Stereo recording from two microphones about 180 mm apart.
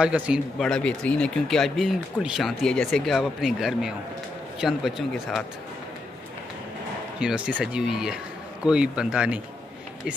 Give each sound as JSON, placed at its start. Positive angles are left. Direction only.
{"t": 0.0, "sound": "speech", "side_deg": -5}
{"t": 7.2, "sound": "speech", "side_deg": -5}